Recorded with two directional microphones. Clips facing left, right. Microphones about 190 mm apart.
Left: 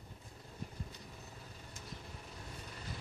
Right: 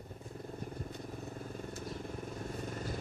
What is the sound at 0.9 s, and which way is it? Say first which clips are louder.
Vehicle: right 10 dB; 50° right (ahead or behind).